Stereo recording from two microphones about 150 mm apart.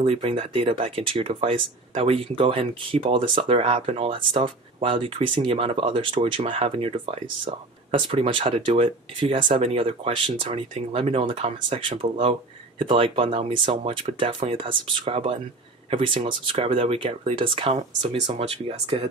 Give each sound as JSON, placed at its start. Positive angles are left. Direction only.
{"t": 0.0, "sound": "speech", "side_deg": -40}